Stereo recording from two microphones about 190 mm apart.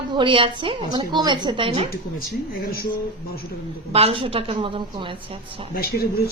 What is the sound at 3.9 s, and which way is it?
A woman's voice, 30° right (ahead or behind).